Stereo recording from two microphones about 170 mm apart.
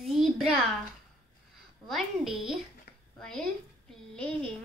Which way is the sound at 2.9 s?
70° left (ahead or behind).